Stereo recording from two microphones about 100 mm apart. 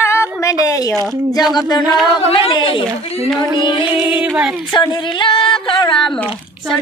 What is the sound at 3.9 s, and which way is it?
Music, 10° right (ahead or behind).